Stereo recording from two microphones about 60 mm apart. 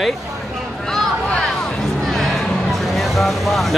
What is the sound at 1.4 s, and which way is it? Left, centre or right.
Music, centre.